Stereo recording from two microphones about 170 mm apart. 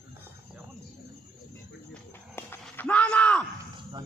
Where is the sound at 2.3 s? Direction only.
10° left (ahead or behind).